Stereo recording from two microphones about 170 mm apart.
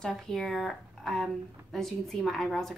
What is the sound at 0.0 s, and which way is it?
Speech, centre (ahead or behind).